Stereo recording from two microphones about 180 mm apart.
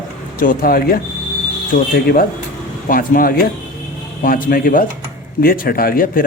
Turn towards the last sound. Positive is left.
turn(degrees=55)  # may be behind; listen again after turning